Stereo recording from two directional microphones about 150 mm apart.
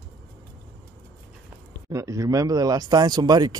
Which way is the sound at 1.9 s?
20° right (ahead or behind).